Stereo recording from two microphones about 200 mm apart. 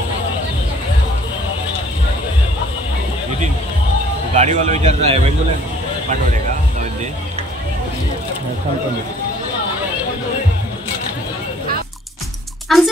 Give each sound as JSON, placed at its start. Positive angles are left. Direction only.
{"t": 4.3, "sound": "speech", "side_deg": -35}
{"t": 6.0, "sound": "music", "side_deg": -40}
{"t": 12.6, "sound": "speech", "side_deg": 0}